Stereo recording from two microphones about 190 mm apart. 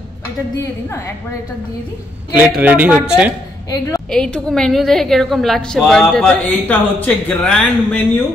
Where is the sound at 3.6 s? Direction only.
15° left (ahead or behind).